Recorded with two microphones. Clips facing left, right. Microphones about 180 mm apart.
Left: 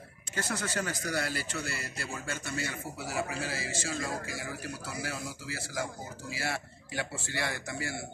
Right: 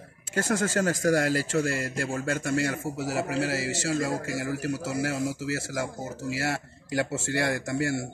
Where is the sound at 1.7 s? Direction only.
90° right.